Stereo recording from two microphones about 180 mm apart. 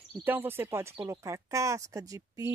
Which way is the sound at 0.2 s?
10° right (ahead or behind).